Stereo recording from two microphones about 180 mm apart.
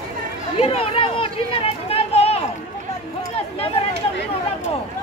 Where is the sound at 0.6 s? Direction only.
30° left (ahead or behind).